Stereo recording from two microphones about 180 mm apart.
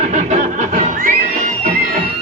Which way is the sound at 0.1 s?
40° right (ahead or behind).